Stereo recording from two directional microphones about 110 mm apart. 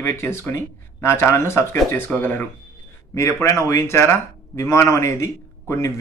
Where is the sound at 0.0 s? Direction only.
25° left (ahead or behind).